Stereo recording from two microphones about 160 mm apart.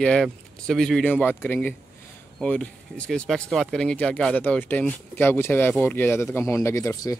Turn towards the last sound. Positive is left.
turn(degrees=20)  # may be behind; listen again after turning